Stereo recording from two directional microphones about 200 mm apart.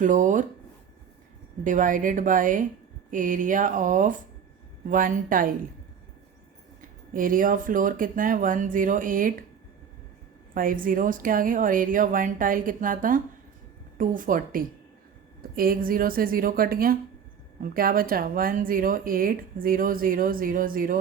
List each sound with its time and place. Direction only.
0.0 s speech: 40° right (ahead or behind)
1.6 s speech: 40° right (ahead or behind)
7.1 s speech: 45° right (ahead or behind)
10.5 s speech: 45° right (ahead or behind)